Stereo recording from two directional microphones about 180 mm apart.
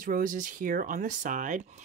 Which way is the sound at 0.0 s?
50° right (ahead or behind).